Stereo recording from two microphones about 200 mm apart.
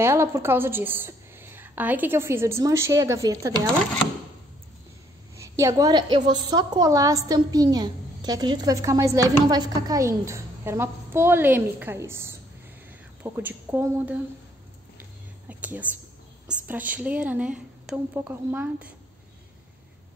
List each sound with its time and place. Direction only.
0.0 s a woman's voice: 10° right (ahead or behind)
5.3 s a woman's voice: 15° right (ahead or behind)
15.0 s a sound: 10° right (ahead or behind)
16.6 s a woman's voice: 10° right (ahead or behind)